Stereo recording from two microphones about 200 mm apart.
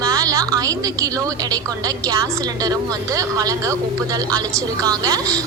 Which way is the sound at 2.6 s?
15° right (ahead or behind).